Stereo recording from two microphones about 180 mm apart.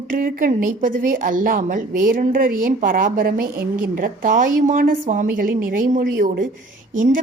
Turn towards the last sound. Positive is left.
turn(degrees=-45)  # may be behind; listen again after turning